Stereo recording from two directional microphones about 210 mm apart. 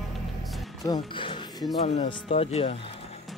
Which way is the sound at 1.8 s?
30° left (ahead or behind).